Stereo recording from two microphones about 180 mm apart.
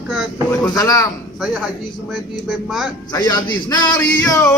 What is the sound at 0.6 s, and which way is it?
Speech, 20° left (ahead or behind).